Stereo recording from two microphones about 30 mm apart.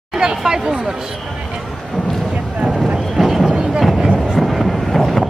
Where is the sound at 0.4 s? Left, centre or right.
Centre.